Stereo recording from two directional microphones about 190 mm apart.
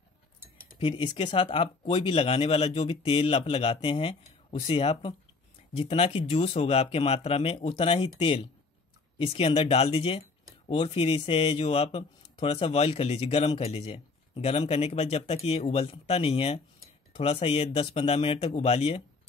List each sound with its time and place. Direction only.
0.7 s speech: 25° left (ahead or behind)